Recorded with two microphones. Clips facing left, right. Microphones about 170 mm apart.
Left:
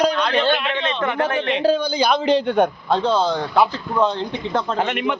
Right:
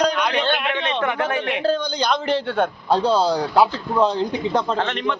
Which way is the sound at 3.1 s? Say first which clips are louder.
Right 1 dB; 35° right (ahead or behind).